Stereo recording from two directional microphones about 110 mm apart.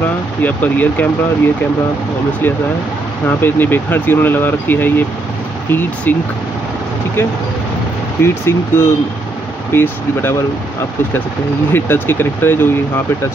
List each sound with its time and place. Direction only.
0.4 s speech: 15° left (ahead or behind)
3.3 s speech: 20° left (ahead or behind)
8.2 s speech: 20° left (ahead or behind)
11.7 s speech: 20° left (ahead or behind)